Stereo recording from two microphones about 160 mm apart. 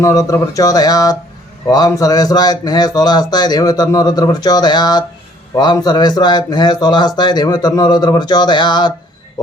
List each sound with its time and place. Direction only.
0.0 s speech: 20° left (ahead or behind)